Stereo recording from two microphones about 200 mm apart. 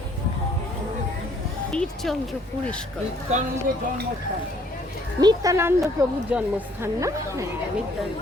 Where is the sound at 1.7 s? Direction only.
Centre (ahead or behind).